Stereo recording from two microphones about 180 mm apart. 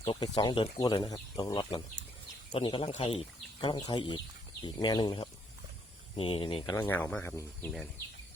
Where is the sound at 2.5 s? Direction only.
30° left (ahead or behind).